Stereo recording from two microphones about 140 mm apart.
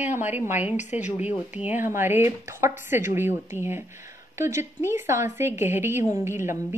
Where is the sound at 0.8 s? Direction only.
55° left (ahead or behind).